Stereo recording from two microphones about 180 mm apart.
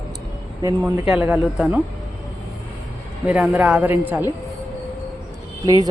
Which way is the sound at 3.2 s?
5° right (ahead or behind).